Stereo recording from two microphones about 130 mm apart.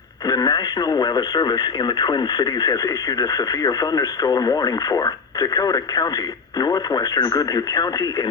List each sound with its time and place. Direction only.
0.3 s speech: 30° left (ahead or behind)